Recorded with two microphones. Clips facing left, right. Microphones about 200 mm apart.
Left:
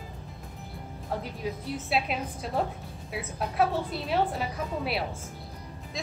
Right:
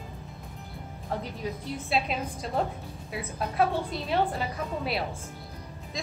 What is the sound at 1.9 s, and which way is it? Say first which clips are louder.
A woman's voice: right 1 dB; 5° left (ahead or behind).